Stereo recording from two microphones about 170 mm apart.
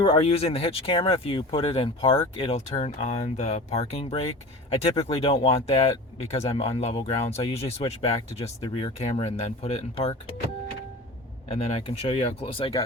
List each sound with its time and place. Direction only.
0.0 s speech: 30° left (ahead or behind)
11.5 s speech: 35° left (ahead or behind)